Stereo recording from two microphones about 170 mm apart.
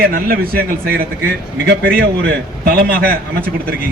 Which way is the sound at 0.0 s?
60° right (ahead or behind).